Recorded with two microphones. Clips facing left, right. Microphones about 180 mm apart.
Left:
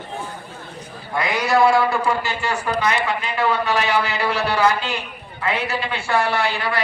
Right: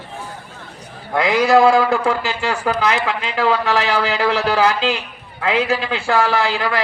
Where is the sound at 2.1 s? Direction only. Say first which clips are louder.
Right 3 dB; 90° right.